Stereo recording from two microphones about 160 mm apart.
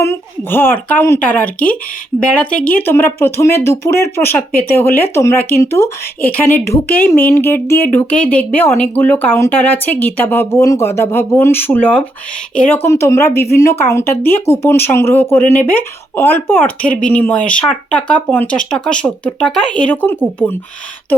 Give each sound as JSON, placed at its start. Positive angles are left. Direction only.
{"t": 0.0, "sound": "speech", "side_deg": 15}